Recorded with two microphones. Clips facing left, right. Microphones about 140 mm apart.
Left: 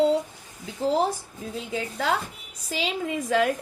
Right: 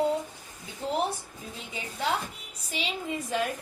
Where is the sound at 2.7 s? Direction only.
90° left.